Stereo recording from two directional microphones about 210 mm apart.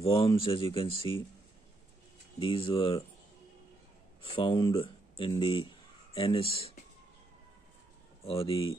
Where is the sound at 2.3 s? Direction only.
25° left (ahead or behind).